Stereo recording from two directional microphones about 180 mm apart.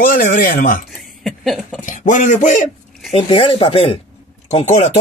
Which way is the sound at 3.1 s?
30° left (ahead or behind).